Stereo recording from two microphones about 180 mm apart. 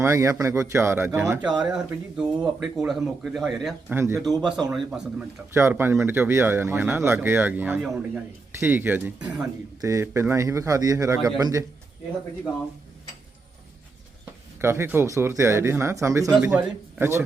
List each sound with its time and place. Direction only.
0.0 s speech: 15° right (ahead or behind)
1.5 s speech: 5° right (ahead or behind)
3.9 s speech: 15° right (ahead or behind)
4.2 s speech: centre (ahead or behind)
5.5 s a man's voice: 15° right (ahead or behind)
14.6 s speech: 15° right (ahead or behind)